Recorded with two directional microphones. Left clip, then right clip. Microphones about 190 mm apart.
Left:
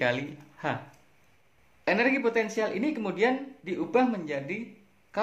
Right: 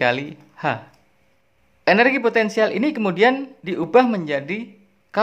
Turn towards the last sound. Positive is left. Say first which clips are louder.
# right 10 dB
turn(degrees=-35)  # may be behind; listen again after turning